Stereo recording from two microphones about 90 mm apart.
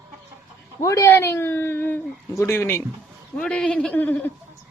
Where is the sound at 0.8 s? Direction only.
35° left (ahead or behind).